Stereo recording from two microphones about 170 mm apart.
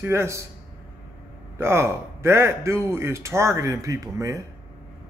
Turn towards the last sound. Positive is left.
turn(degrees=-20)  # may be behind; listen again after turning